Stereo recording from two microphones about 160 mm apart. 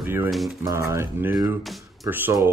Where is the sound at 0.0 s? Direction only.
15° right (ahead or behind).